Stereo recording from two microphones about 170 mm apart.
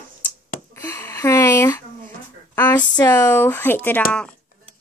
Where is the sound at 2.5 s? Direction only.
15° left (ahead or behind).